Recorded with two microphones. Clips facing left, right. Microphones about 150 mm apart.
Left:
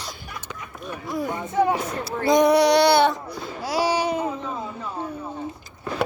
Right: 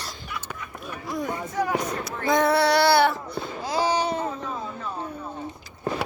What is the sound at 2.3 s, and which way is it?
Child singing, 15° left (ahead or behind).